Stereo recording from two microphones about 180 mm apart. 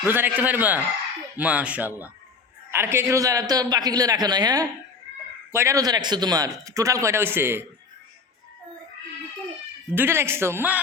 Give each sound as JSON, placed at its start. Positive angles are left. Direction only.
{"t": 0.1, "sound": "a man's voice", "side_deg": -10}
{"t": 9.9, "sound": "speech", "side_deg": -10}